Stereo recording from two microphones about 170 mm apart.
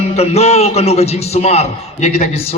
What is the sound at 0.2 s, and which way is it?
A man's voice, 40° left (ahead or behind).